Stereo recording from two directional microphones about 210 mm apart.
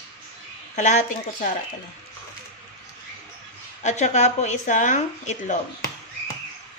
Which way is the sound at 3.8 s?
35° left (ahead or behind).